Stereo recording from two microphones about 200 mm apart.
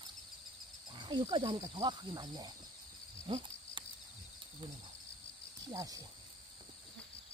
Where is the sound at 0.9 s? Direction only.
25° right (ahead or behind).